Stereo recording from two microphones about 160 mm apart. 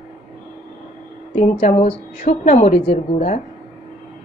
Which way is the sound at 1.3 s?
45° left (ahead or behind).